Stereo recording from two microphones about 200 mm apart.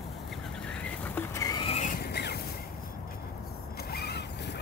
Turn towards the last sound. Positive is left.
turn(degrees=55)  # may be behind; listen again after turning